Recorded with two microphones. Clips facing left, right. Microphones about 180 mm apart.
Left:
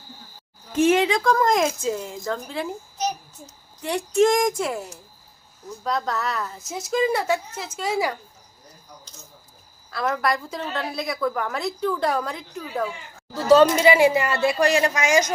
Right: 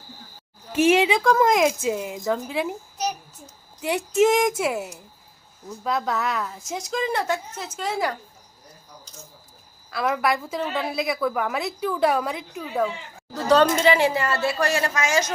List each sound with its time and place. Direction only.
0.9 s a woman's voice: 10° right (ahead or behind)
1.9 s a woman's voice: 15° right (ahead or behind)
3.8 s a woman's voice: 5° right (ahead or behind)
9.9 s a woman's voice: 5° right (ahead or behind); by 15.3 s 15° left (ahead or behind)